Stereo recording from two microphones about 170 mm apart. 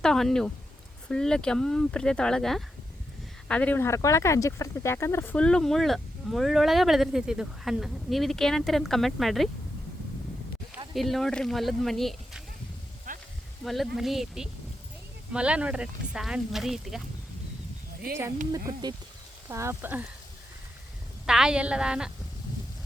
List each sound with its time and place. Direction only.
0.0 s speech: 5° left (ahead or behind)
10.9 s speech: centre (ahead or behind)
13.1 s sizzle: 50° right (ahead or behind)
13.7 s speech: centre (ahead or behind)
18.7 s speech: 20° right (ahead or behind)
21.2 s speech: 5° right (ahead or behind)